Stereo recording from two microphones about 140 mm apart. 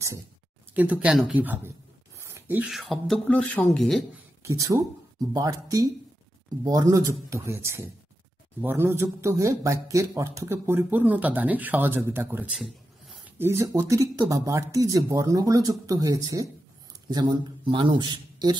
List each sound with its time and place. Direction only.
0.7 s speech: 10° right (ahead or behind)
2.2 s a sound: 15° right (ahead or behind)
2.7 s speech: centre (ahead or behind)
4.4 s speech: 20° right (ahead or behind)
12.5 s a sound: centre (ahead or behind)
13.4 s a man's voice: 20° right (ahead or behind)